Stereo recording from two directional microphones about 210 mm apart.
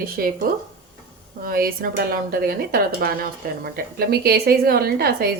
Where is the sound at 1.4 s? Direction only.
45° right (ahead or behind).